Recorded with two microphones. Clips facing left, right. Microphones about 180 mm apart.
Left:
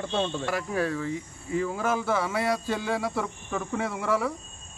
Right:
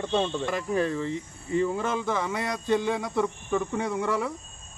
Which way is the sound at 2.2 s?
20° right (ahead or behind).